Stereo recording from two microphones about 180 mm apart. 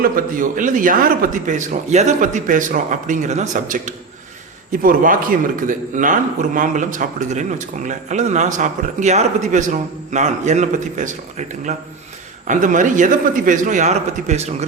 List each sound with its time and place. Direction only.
0.0 s a man's voice: 50° right (ahead or behind)